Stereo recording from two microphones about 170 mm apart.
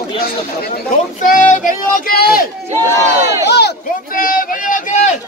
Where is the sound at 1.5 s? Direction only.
50° left (ahead or behind).